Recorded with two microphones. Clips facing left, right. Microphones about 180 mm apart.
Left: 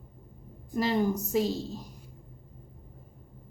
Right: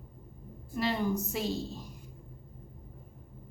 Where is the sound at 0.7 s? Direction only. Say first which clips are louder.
Left 4 dB; 40° left (ahead or behind).